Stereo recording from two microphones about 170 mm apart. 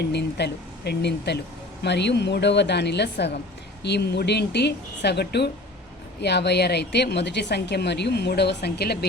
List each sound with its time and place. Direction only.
0.0 s a woman's voice: 80° left
1.8 s a woman's voice: 90° left; by 9.0 s 70° left (ahead or behind)